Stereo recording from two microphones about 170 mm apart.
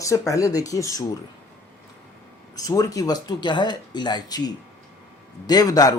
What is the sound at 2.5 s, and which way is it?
Speech, 20° left (ahead or behind).